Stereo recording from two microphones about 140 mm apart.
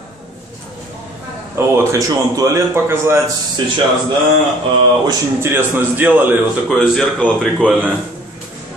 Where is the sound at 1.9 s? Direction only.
20° right (ahead or behind).